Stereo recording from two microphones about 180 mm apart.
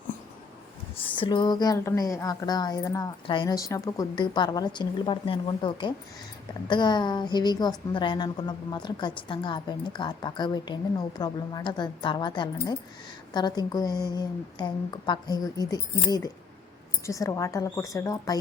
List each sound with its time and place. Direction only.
0.9 s a woman's voice: 30° left (ahead or behind)